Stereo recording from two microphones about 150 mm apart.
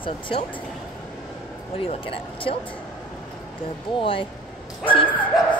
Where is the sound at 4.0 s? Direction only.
35° left (ahead or behind).